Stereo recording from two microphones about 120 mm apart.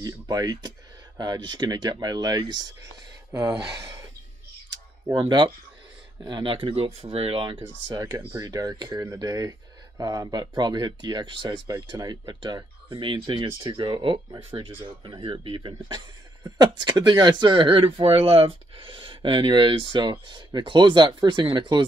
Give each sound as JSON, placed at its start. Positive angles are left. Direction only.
{"t": 0.0, "sound": "speech", "side_deg": -30}
{"t": 3.3, "sound": "speech", "side_deg": -25}
{"t": 5.1, "sound": "speech", "side_deg": -40}
{"t": 7.5, "sound": "speech", "side_deg": -30}